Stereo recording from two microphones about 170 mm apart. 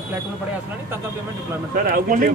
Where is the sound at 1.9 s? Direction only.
55° right (ahead or behind).